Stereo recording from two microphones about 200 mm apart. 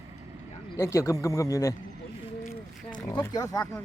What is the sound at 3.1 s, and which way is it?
Speech, 15° left (ahead or behind).